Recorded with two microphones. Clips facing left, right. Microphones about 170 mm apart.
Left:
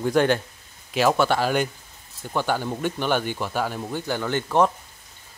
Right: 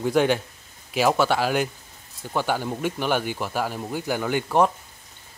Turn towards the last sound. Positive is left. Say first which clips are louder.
# even
turn(degrees=-5)  # may be behind; listen again after turning